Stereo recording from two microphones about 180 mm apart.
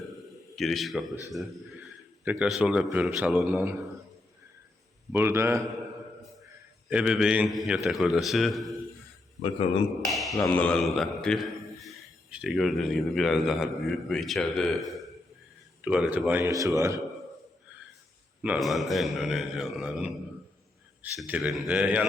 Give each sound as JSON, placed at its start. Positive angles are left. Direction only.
{"t": 0.5, "sound": "a man's voice", "side_deg": 0}
{"t": 2.2, "sound": "a man's voice", "side_deg": -10}
{"t": 5.1, "sound": "a man's voice", "side_deg": -15}
{"t": 6.9, "sound": "a man's voice", "side_deg": -5}
{"t": 9.4, "sound": "a man's voice", "side_deg": 35}
{"t": 10.0, "sound": "a sound", "side_deg": 0}
{"t": 10.4, "sound": "a man's voice", "side_deg": 5}
{"t": 18.4, "sound": "a man's voice", "side_deg": -5}